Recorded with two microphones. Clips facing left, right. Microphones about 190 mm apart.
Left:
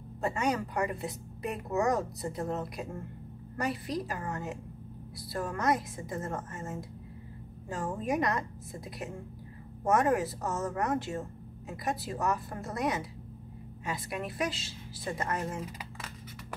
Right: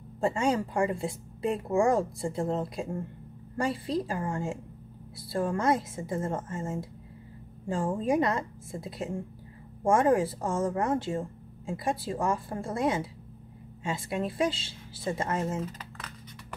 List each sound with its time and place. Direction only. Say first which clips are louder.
0.2 s speech: right 4 dB; 30° right (ahead or behind)